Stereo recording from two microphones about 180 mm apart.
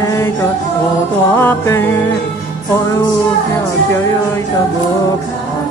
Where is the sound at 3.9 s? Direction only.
15° left (ahead or behind).